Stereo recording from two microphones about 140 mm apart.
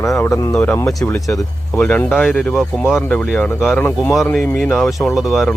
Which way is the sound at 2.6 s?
5° right (ahead or behind).